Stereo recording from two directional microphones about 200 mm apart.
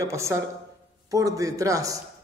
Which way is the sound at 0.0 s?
15° right (ahead or behind).